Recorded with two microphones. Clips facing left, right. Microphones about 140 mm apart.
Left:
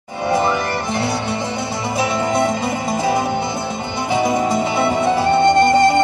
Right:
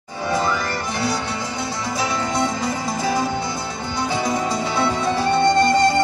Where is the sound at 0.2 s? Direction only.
20° left (ahead or behind).